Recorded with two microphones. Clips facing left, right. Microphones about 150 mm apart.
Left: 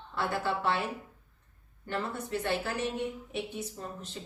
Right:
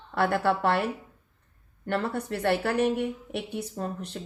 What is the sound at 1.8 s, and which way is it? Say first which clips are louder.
A woman's voice: right 6 dB; 65° right (ahead or behind).